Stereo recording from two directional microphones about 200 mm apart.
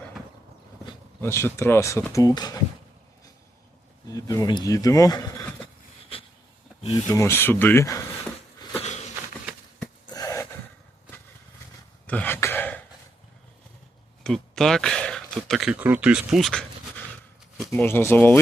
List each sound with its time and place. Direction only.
1.2 s speech: 10° left (ahead or behind)
4.1 s speech: 15° left (ahead or behind)
6.9 s speech: 15° left (ahead or behind)
8.8 s a sound: 35° left (ahead or behind)
9.8 s a sound: 20° left (ahead or behind)
12.0 s throat clearing: 10° left (ahead or behind)
14.3 s speech: centre (ahead or behind)
17.7 s speech: 10° left (ahead or behind)